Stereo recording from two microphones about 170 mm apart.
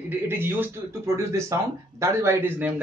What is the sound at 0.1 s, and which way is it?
Speech, 10° right (ahead or behind).